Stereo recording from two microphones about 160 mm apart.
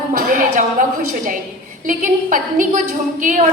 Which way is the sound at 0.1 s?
60° right (ahead or behind).